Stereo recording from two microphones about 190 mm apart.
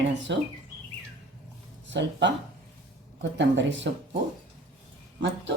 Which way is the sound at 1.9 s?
70° right (ahead or behind).